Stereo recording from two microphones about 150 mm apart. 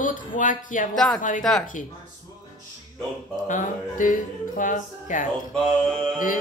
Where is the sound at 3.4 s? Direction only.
55° left (ahead or behind).